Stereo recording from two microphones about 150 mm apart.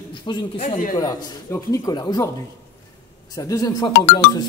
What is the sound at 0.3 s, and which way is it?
Speech, 30° left (ahead or behind).